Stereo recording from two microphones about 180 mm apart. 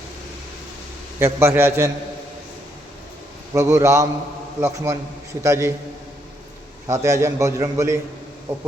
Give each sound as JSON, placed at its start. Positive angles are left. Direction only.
{"t": 1.2, "sound": "a man's voice", "side_deg": -15}
{"t": 3.5, "sound": "a man's voice", "side_deg": -15}
{"t": 6.8, "sound": "a man's voice", "side_deg": -15}